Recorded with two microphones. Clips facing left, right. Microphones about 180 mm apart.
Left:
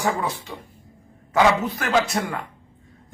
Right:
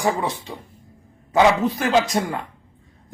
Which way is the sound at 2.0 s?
15° right (ahead or behind).